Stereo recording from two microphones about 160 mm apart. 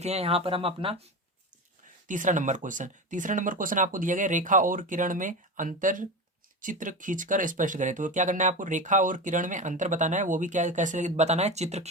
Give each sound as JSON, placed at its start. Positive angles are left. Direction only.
{"t": 0.0, "sound": "speech", "side_deg": -40}
{"t": 2.0, "sound": "speech", "side_deg": -55}